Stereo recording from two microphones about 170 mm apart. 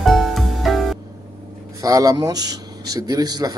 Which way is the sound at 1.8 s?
20° right (ahead or behind).